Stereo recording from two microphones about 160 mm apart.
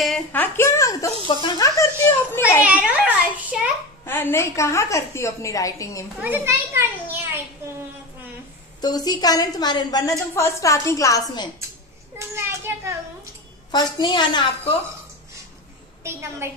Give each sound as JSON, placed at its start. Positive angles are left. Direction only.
{"t": 0.0, "sound": "a woman's voice", "side_deg": 5}
{"t": 1.2, "sound": "speech", "side_deg": 30}
{"t": 1.8, "sound": "children playing", "side_deg": 15}
{"t": 2.6, "sound": "a sound", "side_deg": -10}
{"t": 4.0, "sound": "a woman's voice", "side_deg": 15}
{"t": 6.2, "sound": "a child's voice", "side_deg": -15}
{"t": 8.8, "sound": "a woman's voice", "side_deg": 25}
{"t": 12.2, "sound": "children playing", "side_deg": -15}
{"t": 13.7, "sound": "a woman's voice", "side_deg": 25}
{"t": 16.0, "sound": "a woman's voice", "side_deg": -15}